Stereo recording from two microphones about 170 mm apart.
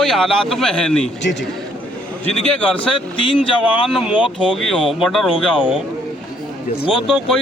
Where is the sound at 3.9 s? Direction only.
5° right (ahead or behind).